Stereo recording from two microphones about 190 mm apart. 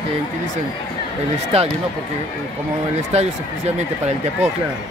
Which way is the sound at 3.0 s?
35° right (ahead or behind).